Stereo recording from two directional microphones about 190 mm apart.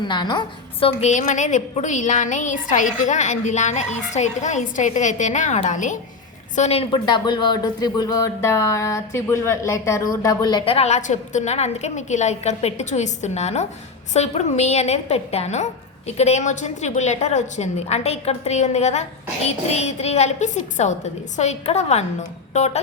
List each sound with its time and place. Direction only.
0.0 s a woman's voice: 25° left (ahead or behind)